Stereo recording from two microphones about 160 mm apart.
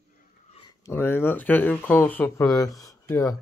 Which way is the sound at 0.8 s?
15° left (ahead or behind).